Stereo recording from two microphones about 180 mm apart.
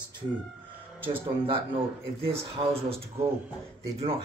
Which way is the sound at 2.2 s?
30° right (ahead or behind).